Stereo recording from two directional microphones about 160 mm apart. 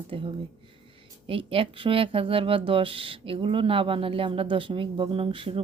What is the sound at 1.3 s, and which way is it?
Speech, 35° right (ahead or behind).